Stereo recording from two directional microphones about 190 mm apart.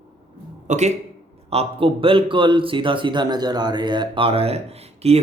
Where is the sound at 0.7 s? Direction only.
35° right (ahead or behind).